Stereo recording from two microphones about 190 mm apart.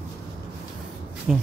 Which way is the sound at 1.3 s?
5° right (ahead or behind).